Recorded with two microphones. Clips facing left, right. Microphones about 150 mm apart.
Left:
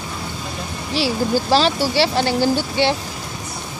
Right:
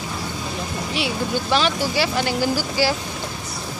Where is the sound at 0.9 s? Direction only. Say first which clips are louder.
Left 6 dB; 35° left (ahead or behind).